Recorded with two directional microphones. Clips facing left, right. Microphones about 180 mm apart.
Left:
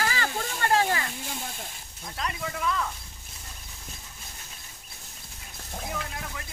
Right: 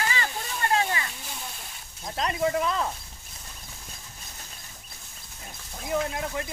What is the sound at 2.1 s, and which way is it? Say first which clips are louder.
Speech: right 8 dB; 30° right (ahead or behind).